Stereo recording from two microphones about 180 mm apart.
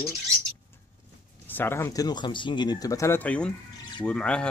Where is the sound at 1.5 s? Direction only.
10° left (ahead or behind).